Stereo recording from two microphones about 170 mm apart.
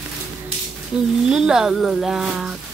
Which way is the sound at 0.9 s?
5° right (ahead or behind).